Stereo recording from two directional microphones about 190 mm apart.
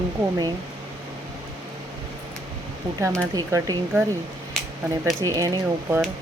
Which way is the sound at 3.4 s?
15° right (ahead or behind).